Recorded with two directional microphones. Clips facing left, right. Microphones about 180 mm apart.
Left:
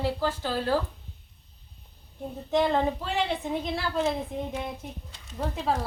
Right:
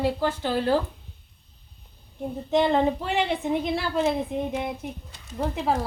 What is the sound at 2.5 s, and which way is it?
A woman's voice, 20° right (ahead or behind).